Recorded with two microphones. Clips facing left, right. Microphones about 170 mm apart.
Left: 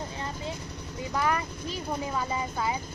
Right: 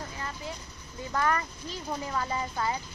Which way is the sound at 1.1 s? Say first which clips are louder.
Even; 15° left (ahead or behind).